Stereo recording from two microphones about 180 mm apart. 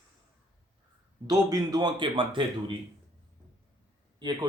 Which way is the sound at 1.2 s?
20° right (ahead or behind).